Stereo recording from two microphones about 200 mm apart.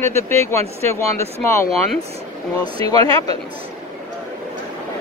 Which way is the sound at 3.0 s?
25° right (ahead or behind).